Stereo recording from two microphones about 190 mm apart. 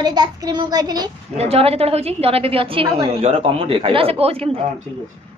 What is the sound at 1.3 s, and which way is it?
A woman's voice, 30° right (ahead or behind).